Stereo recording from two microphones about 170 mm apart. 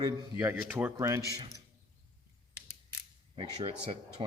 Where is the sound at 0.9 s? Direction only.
20° right (ahead or behind).